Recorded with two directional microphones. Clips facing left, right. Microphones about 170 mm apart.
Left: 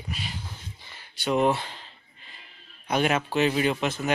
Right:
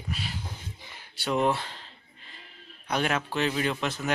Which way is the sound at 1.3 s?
5° left (ahead or behind).